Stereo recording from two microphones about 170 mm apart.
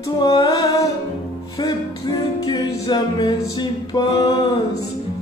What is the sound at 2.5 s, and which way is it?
Music, 25° left (ahead or behind).